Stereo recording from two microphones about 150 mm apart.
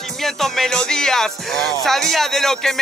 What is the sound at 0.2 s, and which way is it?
Speech, centre (ahead or behind).